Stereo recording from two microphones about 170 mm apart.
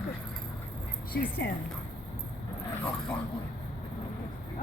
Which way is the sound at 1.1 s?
75° left (ahead or behind).